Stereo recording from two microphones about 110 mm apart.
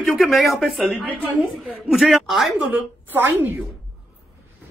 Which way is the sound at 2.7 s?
15° right (ahead or behind).